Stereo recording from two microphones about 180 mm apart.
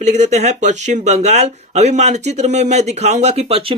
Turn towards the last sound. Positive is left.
turn(degrees=-35)  # may be behind; listen again after turning